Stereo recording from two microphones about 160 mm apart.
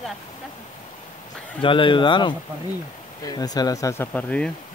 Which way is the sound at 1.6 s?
30° left (ahead or behind).